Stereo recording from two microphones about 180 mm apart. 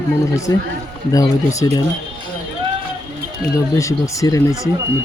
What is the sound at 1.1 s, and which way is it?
Speech, 20° left (ahead or behind).